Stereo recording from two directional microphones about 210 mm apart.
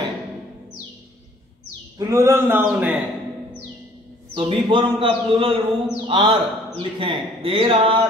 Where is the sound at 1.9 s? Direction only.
15° right (ahead or behind).